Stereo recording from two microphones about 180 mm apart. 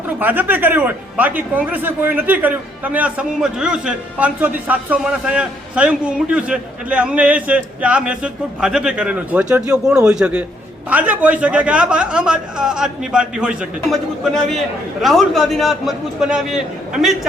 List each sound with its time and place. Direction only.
0.2 s a man's voice: 10° right (ahead or behind)